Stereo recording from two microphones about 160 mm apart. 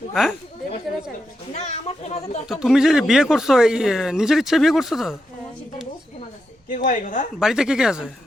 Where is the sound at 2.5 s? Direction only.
5° right (ahead or behind).